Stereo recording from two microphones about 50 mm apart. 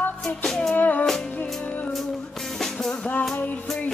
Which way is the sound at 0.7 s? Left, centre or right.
Left.